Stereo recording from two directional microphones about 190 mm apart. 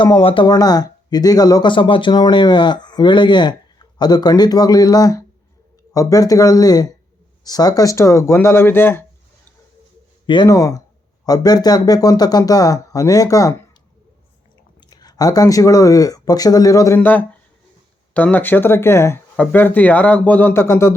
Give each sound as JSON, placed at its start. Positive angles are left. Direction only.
{"t": 0.0, "sound": "speech", "side_deg": 25}
{"t": 10.2, "sound": "speech", "side_deg": 20}
{"t": 14.8, "sound": "speech", "side_deg": 20}